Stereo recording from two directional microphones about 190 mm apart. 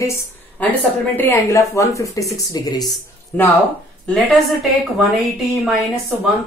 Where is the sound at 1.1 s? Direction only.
15° left (ahead or behind).